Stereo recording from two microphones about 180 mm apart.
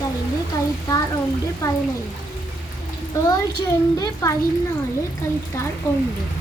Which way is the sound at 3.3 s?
20° left (ahead or behind).